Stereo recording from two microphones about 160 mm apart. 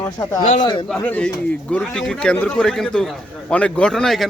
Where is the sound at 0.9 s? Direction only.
10° left (ahead or behind).